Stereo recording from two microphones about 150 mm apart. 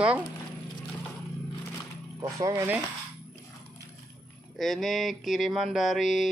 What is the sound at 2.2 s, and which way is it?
Speech, 20° right (ahead or behind).